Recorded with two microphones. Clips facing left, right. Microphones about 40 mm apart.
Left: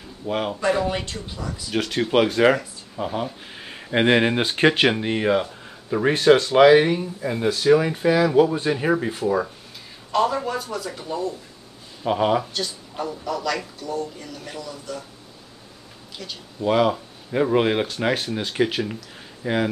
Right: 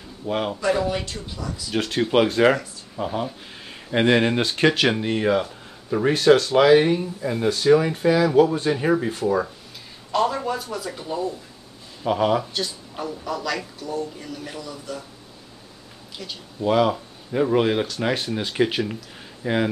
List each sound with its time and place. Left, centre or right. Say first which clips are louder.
0.3 s speech: even; centre
0.7 s speech: even; left
1.0 s speech: even; left
1.7 s speech: even; centre
6.1 s speech: left 1 dB; left; by 11.2 s centre
12.0 s speech: even; centre
12.5 s speech: even; centre
16.6 s speech: even; centre
17.6 s speech: even; centre
18.1 s speech: even; centre